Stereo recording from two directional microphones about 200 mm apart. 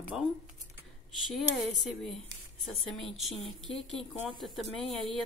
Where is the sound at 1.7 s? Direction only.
Centre (ahead or behind).